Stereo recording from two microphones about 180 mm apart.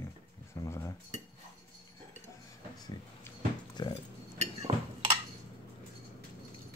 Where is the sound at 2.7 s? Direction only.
20° left (ahead or behind).